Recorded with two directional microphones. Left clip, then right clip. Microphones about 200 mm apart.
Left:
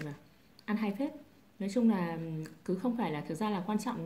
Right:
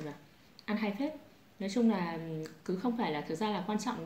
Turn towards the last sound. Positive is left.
turn(degrees=45)  # may be behind; listen again after turning